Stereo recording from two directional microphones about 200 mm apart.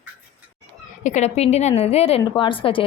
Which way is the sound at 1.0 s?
35° left (ahead or behind).